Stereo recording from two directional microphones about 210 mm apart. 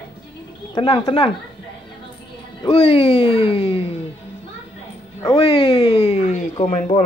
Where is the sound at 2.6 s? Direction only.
25° left (ahead or behind).